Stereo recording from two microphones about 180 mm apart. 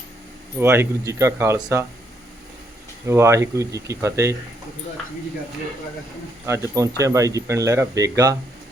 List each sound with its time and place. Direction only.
0.6 s speech: 15° right (ahead or behind)
3.1 s speech: 15° right (ahead or behind)
6.4 s speech: 15° right (ahead or behind)